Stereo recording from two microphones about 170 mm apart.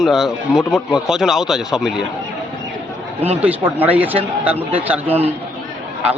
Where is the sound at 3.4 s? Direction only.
10° right (ahead or behind).